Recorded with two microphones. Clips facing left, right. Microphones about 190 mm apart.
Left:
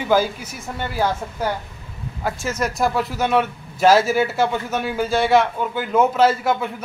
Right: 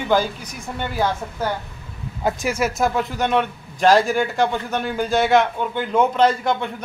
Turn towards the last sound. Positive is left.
turn(degrees=5)  # may be behind; listen again after turning